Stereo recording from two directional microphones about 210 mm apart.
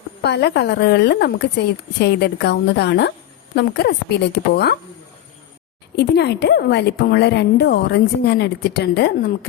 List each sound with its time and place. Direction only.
0.2 s a woman's voice: 55° left (ahead or behind)
6.0 s a woman's voice: 50° left (ahead or behind)